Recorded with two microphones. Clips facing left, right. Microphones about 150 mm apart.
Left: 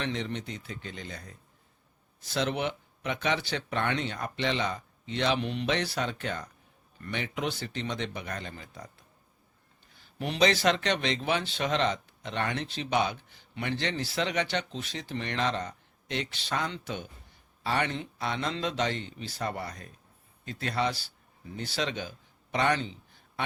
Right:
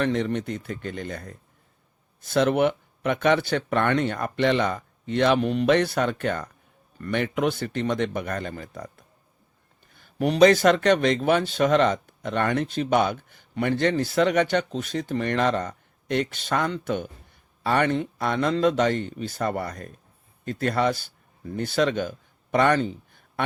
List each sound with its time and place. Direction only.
0.0 s speech: 50° right (ahead or behind)